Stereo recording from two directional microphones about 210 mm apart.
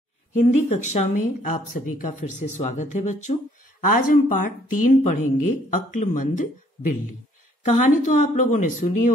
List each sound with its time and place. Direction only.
0.4 s speech: 30° left (ahead or behind)